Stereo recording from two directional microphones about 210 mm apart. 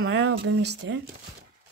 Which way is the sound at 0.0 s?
70° right (ahead or behind).